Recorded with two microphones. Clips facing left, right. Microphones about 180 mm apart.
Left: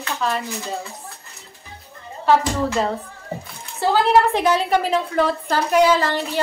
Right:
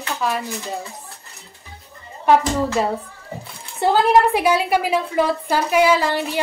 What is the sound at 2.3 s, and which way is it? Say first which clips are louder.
Speech: right 1 dB; 10° right (ahead or behind).